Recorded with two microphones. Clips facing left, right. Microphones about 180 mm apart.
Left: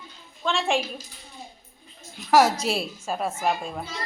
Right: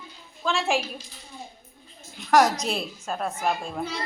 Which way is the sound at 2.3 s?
5° left (ahead or behind).